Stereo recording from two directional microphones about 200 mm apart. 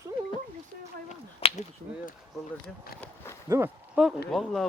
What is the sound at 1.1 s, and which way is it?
Whip, 35° left (ahead or behind).